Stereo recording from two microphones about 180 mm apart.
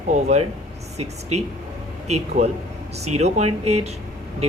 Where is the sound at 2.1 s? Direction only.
35° right (ahead or behind).